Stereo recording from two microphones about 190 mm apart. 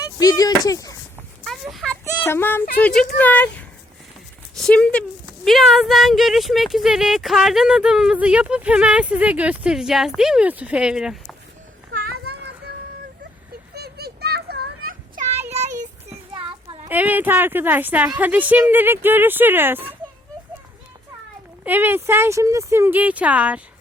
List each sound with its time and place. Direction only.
0.2 s speech: 20° left (ahead or behind)
1.5 s a child's voice: centre (ahead or behind)
11.9 s children playing: 60° right (ahead or behind)
13.7 s a sound: 55° right (ahead or behind)
16.3 s children playing: 25° right (ahead or behind)
16.9 s speech: 10° right (ahead or behind)
21.6 s speech: 10° right (ahead or behind)